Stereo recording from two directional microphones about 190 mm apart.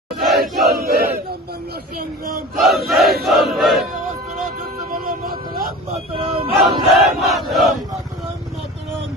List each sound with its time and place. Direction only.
0.3 s battle cry: centre (ahead or behind)
0.7 s battle cry: 55° right (ahead or behind)
2.6 s battle cry: centre (ahead or behind)
3.2 s crowd: centre (ahead or behind)
4.9 s vehicle: 50° right (ahead or behind)
5.9 s speech: 30° right (ahead or behind)
6.6 s battle cry: centre (ahead or behind)